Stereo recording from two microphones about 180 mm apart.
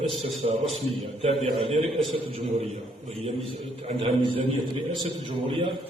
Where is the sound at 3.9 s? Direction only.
30° right (ahead or behind).